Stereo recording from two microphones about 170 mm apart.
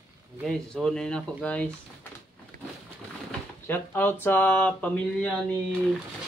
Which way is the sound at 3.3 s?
10° left (ahead or behind).